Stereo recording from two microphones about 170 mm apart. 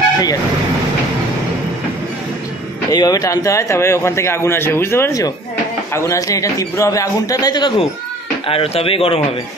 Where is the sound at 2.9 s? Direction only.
20° left (ahead or behind).